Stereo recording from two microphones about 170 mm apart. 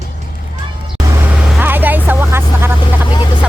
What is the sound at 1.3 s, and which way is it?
Vehicle, 10° right (ahead or behind).